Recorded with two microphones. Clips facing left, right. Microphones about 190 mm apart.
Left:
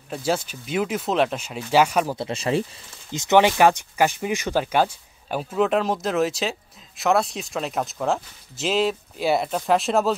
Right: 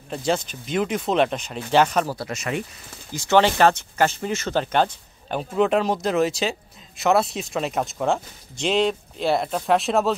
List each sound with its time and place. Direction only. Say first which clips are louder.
0.1 s speech: right 1 dB; 5° left (ahead or behind)
2.1 s speech: left 4 dB; 30° left (ahead or behind)
3.1 s speech: left 1 dB; 20° left (ahead or behind); by 10.1 s centre (ahead or behind)